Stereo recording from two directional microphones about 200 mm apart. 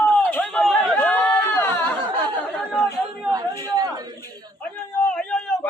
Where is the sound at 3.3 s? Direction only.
20° right (ahead or behind).